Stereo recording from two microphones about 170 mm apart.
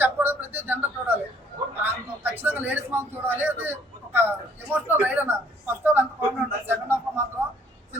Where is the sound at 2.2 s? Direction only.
10° right (ahead or behind).